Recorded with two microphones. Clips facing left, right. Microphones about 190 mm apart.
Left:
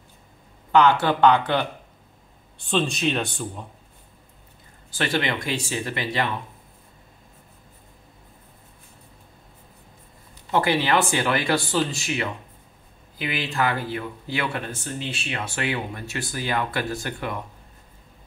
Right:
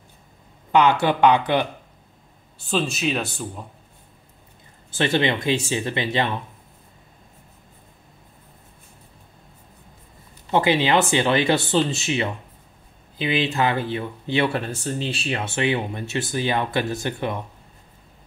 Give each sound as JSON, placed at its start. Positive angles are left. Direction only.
{"t": 0.7, "sound": "speech", "side_deg": -15}
{"t": 2.6, "sound": "speech", "side_deg": -5}
{"t": 4.9, "sound": "speech", "side_deg": -25}
{"t": 10.5, "sound": "speech", "side_deg": -20}
{"t": 15.4, "sound": "speech", "side_deg": -20}